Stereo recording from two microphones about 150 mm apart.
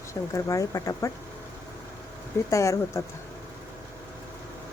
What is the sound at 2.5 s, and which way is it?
Speech, 20° left (ahead or behind).